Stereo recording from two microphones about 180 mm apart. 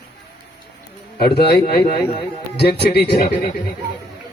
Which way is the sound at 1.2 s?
65° left (ahead or behind).